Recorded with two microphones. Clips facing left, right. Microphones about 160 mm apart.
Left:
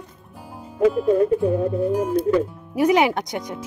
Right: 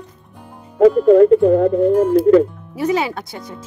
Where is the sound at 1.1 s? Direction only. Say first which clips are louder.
Right 8 dB; 75° right (ahead or behind).